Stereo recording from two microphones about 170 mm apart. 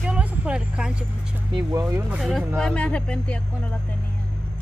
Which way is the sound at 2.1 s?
Centre (ahead or behind).